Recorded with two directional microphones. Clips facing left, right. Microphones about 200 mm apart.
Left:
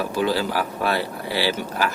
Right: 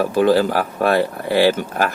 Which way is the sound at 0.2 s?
50° right (ahead or behind).